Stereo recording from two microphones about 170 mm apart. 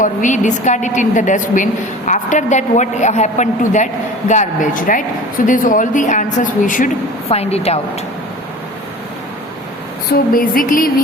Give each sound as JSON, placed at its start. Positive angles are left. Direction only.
{"t": 0.0, "sound": "a woman's voice", "side_deg": 50}
{"t": 7.3, "sound": "a woman's voice", "side_deg": 35}
{"t": 10.1, "sound": "music", "side_deg": 55}